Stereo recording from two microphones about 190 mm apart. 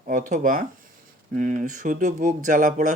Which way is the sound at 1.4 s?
40° right (ahead or behind).